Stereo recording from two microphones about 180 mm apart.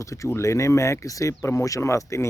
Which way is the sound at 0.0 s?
15° left (ahead or behind).